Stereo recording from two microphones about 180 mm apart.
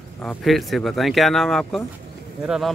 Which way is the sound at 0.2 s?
5° left (ahead or behind).